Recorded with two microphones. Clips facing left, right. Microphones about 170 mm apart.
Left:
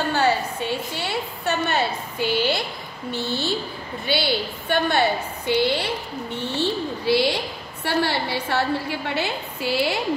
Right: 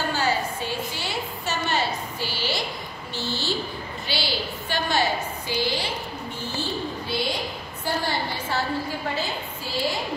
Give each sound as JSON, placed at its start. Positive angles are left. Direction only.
{"t": 0.1, "sound": "a woman's voice", "side_deg": 60}